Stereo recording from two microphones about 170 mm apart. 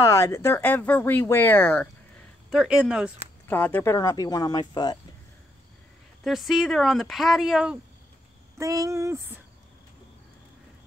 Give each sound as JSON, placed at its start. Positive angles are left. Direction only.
{"t": 0.0, "sound": "speech", "side_deg": 15}
{"t": 2.5, "sound": "speech", "side_deg": -5}
{"t": 3.4, "sound": "speech", "side_deg": 10}
{"t": 6.2, "sound": "speech", "side_deg": 0}
{"t": 8.5, "sound": "speech", "side_deg": -20}